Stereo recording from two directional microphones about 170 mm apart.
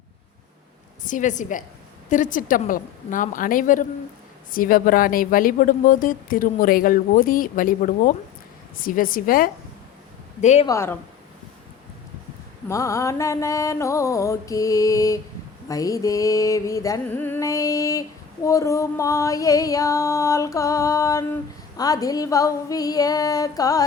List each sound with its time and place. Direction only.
1.0 s a woman's voice: 50° left (ahead or behind)
10.4 s a woman's voice: 45° left (ahead or behind)
10.7 s speech: 15° left (ahead or behind)
12.6 s female singing: 20° left (ahead or behind)